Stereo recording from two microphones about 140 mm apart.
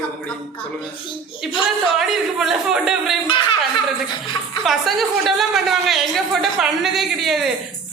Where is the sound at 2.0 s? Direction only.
Centre (ahead or behind).